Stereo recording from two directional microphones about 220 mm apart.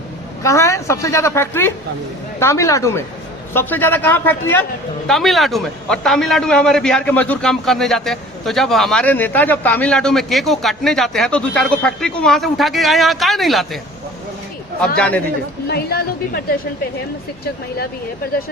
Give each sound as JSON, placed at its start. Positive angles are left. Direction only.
{"t": 0.4, "sound": "a woman's voice", "side_deg": 15}
{"t": 14.9, "sound": "a man's voice", "side_deg": 5}
{"t": 15.6, "sound": "speech", "side_deg": 45}
{"t": 17.4, "sound": "speech", "side_deg": 45}